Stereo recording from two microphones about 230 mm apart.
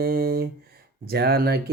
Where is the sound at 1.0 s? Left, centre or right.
Right.